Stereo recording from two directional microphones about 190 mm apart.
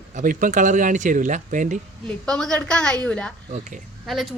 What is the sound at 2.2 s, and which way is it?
A woman's voice, 5° left (ahead or behind).